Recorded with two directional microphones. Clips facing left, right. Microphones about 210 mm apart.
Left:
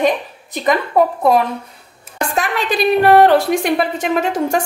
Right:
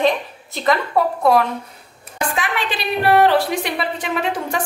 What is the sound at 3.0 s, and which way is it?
A woman's voice, 45° left (ahead or behind).